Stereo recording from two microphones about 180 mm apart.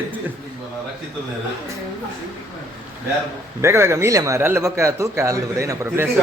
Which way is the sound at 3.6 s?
15° right (ahead or behind).